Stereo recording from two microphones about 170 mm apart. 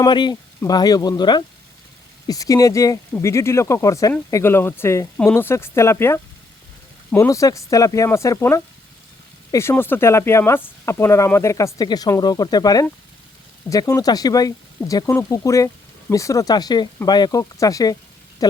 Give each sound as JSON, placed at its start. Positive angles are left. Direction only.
{"t": 0.0, "sound": "speech", "side_deg": 25}